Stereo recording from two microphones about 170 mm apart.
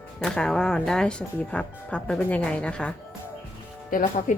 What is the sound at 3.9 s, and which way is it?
Speech, 50° left (ahead or behind).